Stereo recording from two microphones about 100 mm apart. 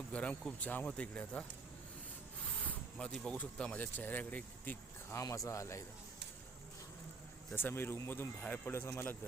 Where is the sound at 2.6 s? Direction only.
10° left (ahead or behind).